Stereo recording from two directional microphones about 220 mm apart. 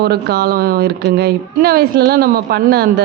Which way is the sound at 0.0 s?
45° right (ahead or behind).